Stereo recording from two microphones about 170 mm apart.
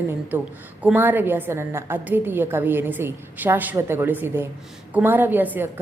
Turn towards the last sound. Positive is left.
turn(degrees=-10)  # may be behind; listen again after turning